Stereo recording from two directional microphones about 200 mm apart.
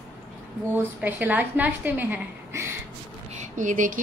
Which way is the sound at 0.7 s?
10° right (ahead or behind).